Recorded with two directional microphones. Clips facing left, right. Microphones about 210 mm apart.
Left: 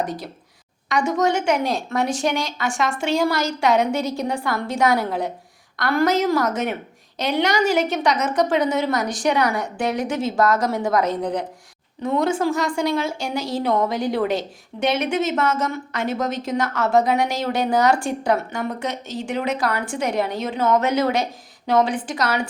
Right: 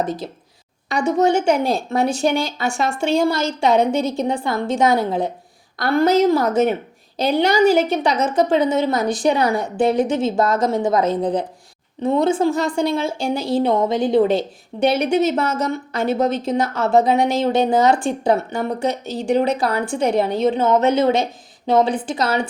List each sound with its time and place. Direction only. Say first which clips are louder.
0.0 s a woman's voice: right 3 dB; 25° right (ahead or behind)